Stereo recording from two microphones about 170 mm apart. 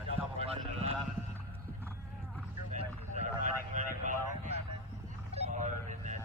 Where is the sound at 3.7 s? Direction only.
45° right (ahead or behind).